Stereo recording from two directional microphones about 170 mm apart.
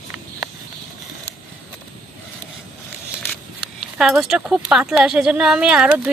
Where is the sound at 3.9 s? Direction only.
5° right (ahead or behind).